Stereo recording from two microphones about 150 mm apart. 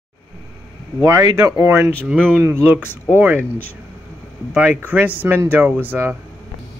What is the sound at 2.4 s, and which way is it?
Speech, 15° right (ahead or behind).